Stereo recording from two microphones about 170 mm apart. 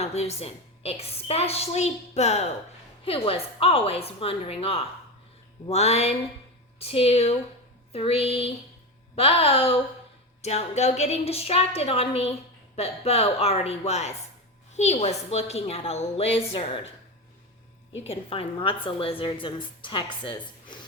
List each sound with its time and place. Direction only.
0.0 s a woman's voice: 40° left (ahead or behind)
18.0 s a woman's voice: 35° left (ahead or behind)